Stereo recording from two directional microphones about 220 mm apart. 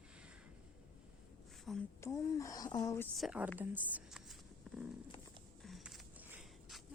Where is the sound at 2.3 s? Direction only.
15° left (ahead or behind).